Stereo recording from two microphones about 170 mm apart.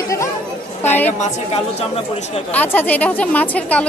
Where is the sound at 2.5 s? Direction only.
10° left (ahead or behind).